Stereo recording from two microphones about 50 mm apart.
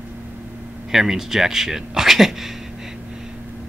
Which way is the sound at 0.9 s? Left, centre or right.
Centre.